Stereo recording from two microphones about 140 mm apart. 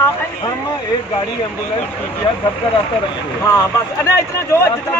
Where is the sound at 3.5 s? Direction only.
20° left (ahead or behind).